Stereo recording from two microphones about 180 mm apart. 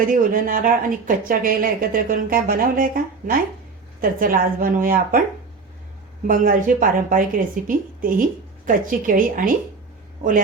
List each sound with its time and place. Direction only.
0.0 s speech: 50° right (ahead or behind)
6.2 s speech: 50° right (ahead or behind)